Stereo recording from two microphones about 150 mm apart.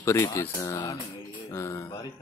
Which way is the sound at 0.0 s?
20° left (ahead or behind).